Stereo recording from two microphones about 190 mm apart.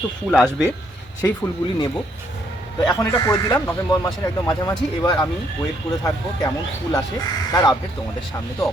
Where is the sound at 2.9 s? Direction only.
20° left (ahead or behind).